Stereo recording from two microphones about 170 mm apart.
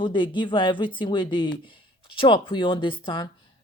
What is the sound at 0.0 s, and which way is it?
A woman's voice, 30° left (ahead or behind).